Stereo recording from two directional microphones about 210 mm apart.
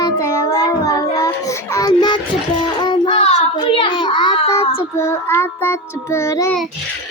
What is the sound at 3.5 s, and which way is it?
A child's voice, 25° left (ahead or behind).